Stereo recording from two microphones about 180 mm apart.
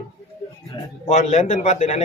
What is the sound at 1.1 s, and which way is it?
Speech, 40° left (ahead or behind).